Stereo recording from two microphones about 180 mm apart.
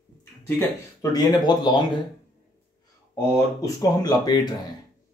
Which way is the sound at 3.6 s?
20° left (ahead or behind).